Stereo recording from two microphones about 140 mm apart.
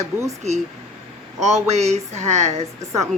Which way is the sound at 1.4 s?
50° right (ahead or behind).